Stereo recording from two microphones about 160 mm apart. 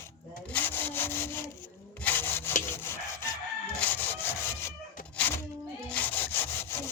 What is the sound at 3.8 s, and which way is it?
Wood, 10° left (ahead or behind).